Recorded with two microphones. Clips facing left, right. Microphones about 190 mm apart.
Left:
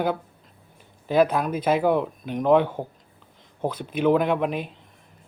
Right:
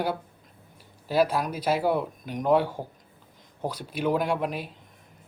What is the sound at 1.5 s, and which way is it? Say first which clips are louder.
Speech: left 5 dB; 55° left (ahead or behind).